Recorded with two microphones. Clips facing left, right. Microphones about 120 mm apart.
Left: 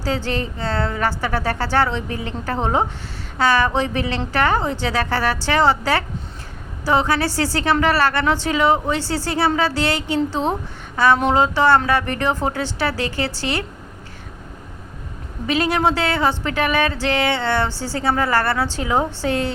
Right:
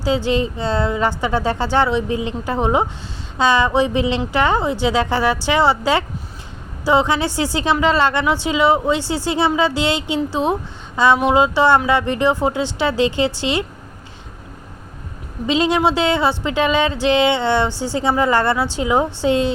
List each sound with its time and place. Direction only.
0.0 s a woman's voice: 15° right (ahead or behind)
15.4 s a woman's voice: 20° right (ahead or behind)